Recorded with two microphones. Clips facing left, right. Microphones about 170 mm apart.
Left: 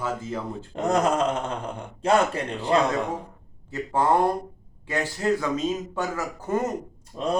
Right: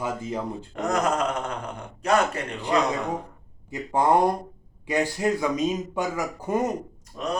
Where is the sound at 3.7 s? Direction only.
15° right (ahead or behind).